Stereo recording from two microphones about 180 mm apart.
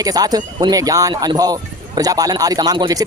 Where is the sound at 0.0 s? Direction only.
20° right (ahead or behind).